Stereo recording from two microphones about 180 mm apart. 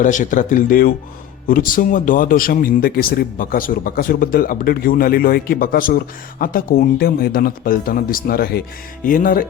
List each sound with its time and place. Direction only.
0.0 s a man's voice: 45° left (ahead or behind)